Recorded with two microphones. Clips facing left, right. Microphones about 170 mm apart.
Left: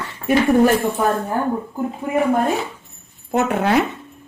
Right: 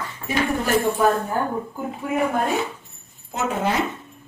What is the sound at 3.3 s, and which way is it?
Speech, 65° left (ahead or behind).